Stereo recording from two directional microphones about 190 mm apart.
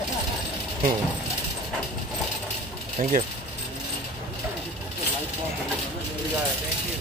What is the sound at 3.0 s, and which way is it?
Speech, 35° right (ahead or behind).